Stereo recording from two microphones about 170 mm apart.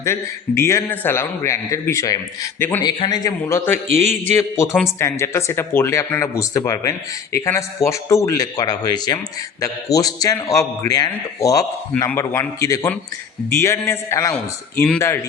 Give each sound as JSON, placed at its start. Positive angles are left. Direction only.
{"t": 0.0, "sound": "a man's voice", "side_deg": 15}